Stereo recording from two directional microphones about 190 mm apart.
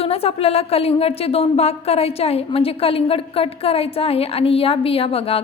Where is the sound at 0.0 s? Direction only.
30° left (ahead or behind).